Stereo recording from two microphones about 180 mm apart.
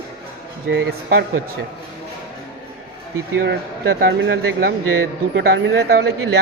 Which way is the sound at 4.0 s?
80° right.